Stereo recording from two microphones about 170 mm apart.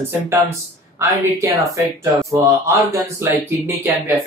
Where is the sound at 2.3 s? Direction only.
20° right (ahead or behind).